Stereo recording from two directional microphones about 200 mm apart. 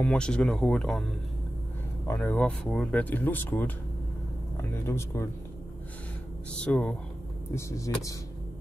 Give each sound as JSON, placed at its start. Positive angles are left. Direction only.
{"t": 0.0, "sound": "speech", "side_deg": 5}
{"t": 2.0, "sound": "speech", "side_deg": 10}
{"t": 6.5, "sound": "speech", "side_deg": 5}